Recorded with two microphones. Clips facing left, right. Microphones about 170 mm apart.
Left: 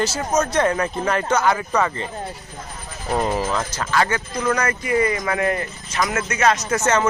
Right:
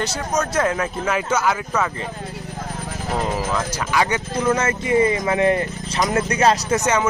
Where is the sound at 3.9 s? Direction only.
15° right (ahead or behind); by 6.6 s 30° right (ahead or behind).